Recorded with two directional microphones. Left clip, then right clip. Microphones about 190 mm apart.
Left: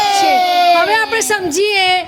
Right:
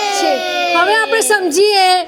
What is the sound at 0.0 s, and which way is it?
Baby cry, 30° left (ahead or behind).